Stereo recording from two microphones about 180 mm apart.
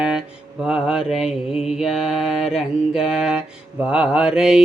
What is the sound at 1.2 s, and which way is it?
Mantra, 35° left (ahead or behind).